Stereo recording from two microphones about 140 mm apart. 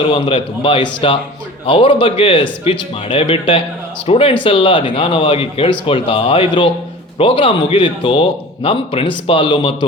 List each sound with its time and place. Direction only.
0.0 s a man's voice: 40° left (ahead or behind)